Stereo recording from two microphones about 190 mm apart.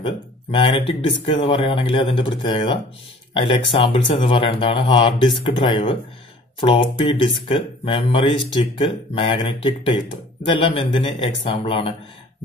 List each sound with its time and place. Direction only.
0.0 s speech: 30° left (ahead or behind)